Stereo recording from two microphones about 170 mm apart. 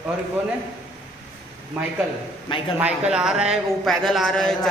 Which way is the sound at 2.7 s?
5° right (ahead or behind).